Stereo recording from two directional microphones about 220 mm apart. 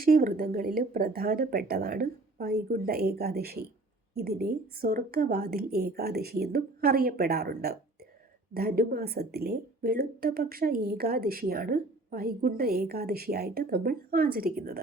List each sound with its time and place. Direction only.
0.0 s speech: 40° right (ahead or behind)